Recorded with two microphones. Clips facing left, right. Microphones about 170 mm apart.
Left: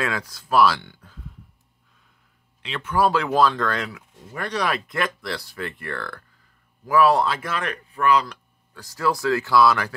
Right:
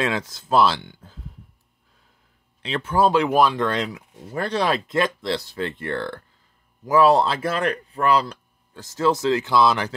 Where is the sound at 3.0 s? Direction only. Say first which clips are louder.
Right 2 dB; 20° right (ahead or behind).